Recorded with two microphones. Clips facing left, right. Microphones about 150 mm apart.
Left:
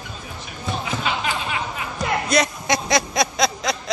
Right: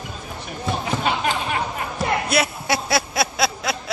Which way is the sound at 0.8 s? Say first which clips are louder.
Right 3 dB; 45° right (ahead or behind).